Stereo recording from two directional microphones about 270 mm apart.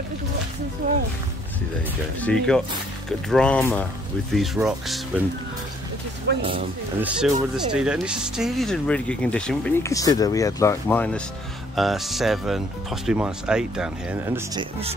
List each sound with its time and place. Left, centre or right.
2.2 s speech: centre
6.3 s speech: right
7.0 s speech: centre